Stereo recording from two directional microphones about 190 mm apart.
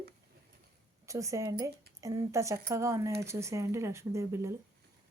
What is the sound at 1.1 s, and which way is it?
Speech, 15° right (ahead or behind).